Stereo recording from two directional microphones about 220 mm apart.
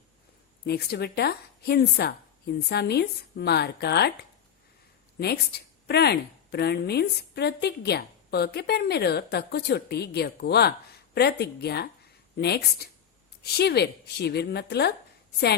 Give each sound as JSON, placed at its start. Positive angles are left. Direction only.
{"t": 0.6, "sound": "a woman's voice", "side_deg": 45}
{"t": 5.2, "sound": "a woman's voice", "side_deg": 45}